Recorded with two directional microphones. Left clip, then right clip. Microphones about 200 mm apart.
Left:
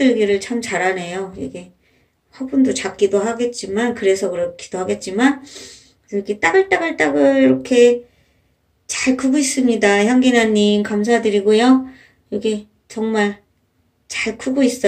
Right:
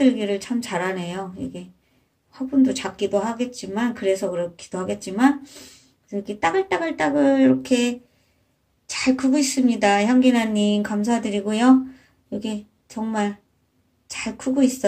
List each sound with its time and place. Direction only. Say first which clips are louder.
0.0 s a woman's voice: left 6 dB; 20° right (ahead or behind)
8.9 s a woman's voice: left 3 dB; 20° right (ahead or behind)